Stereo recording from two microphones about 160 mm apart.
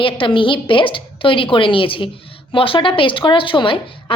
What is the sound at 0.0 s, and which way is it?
A woman's voice, 30° left (ahead or behind).